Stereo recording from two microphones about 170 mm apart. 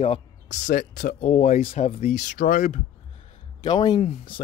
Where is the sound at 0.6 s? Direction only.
50° left (ahead or behind).